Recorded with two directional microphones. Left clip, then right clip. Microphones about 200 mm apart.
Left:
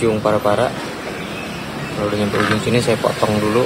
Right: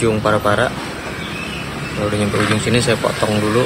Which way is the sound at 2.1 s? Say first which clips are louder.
Even; centre (ahead or behind).